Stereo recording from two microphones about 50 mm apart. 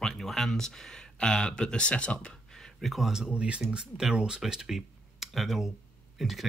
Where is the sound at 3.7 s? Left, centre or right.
Centre.